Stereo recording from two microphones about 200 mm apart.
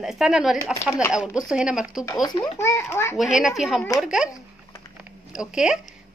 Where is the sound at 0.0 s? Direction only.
Centre (ahead or behind).